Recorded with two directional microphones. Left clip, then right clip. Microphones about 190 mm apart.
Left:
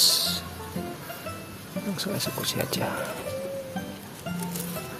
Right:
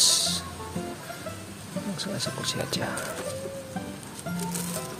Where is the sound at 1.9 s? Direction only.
15° left (ahead or behind).